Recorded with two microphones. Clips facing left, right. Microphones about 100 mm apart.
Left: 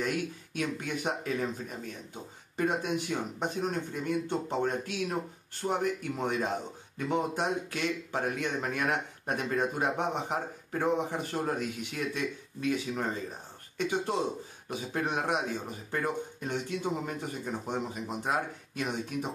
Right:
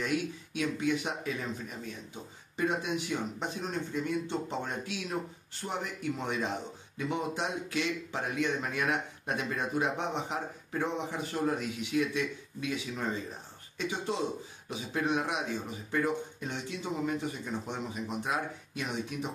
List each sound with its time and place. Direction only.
0.6 s speech: 50° left (ahead or behind)